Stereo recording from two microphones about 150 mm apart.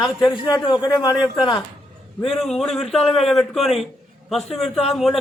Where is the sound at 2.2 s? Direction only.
Centre (ahead or behind).